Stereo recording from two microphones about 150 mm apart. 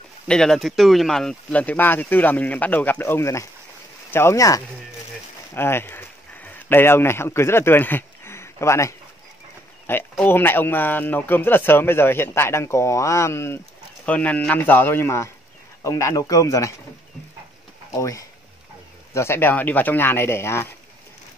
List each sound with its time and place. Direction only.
0.3 s a man's voice: 5° left (ahead or behind)
10.1 s a man's voice: 15° left (ahead or behind)
17.9 s a man's voice: 20° left (ahead or behind)